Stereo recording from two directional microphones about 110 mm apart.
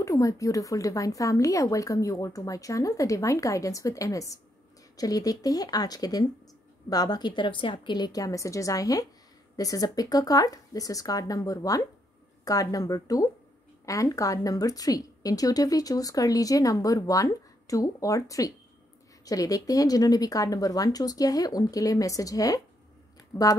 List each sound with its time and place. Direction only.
0.0 s a woman's voice: 30° left (ahead or behind)